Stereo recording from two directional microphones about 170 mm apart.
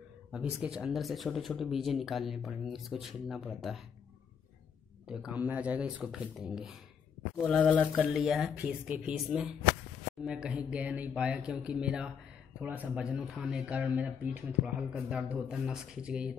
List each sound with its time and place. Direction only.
0.3 s speech: 5° right (ahead or behind)
5.0 s speech: 5° right (ahead or behind)
8.0 s speech: 5° right (ahead or behind)